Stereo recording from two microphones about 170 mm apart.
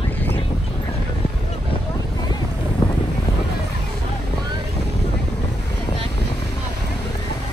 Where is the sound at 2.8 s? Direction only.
30° left (ahead or behind).